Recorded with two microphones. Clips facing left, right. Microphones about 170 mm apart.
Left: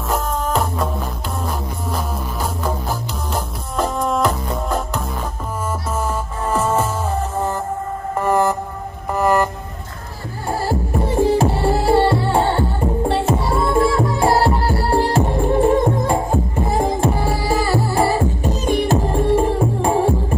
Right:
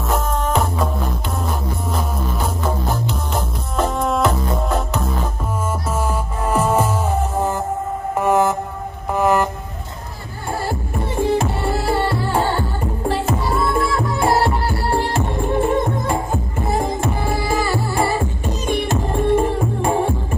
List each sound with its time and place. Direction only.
0.1 s music: centre (ahead or behind)
2.6 s music: centre (ahead or behind)
6.4 s music: 10° right (ahead or behind)
10.6 s music: 35° left (ahead or behind)